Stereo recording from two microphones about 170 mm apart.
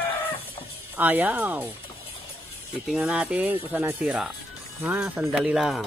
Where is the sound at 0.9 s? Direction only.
10° right (ahead or behind).